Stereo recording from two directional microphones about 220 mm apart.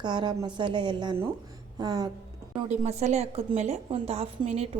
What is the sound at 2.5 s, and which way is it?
A woman's voice, 30° right (ahead or behind).